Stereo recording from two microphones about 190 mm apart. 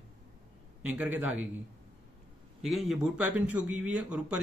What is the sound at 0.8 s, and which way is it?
Speech, 10° right (ahead or behind).